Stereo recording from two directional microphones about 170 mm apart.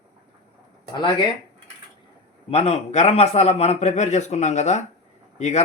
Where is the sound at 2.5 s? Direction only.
40° left (ahead or behind).